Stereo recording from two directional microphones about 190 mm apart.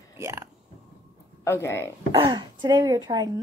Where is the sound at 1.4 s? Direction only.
15° left (ahead or behind).